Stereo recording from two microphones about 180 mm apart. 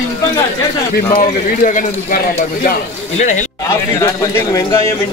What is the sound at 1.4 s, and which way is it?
Speech, 50° left (ahead or behind).